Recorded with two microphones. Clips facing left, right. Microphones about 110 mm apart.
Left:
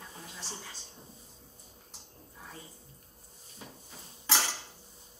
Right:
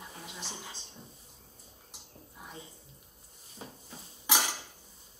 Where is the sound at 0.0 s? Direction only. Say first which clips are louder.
Right 2 dB; 15° right (ahead or behind).